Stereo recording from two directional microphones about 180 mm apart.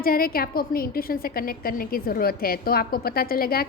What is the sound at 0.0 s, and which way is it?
A woman's voice, 55° left (ahead or behind).